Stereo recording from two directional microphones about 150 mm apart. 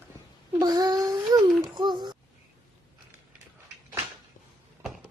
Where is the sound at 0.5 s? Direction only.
25° right (ahead or behind).